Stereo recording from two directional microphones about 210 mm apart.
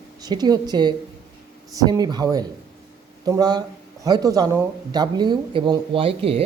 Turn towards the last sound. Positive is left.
turn(degrees=-25)  # may be behind; listen again after turning